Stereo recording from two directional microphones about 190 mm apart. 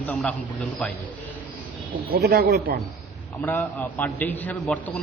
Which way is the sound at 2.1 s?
55° right (ahead or behind).